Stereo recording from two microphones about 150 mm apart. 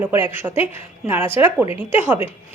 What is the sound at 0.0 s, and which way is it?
A woman's voice, 10° right (ahead or behind).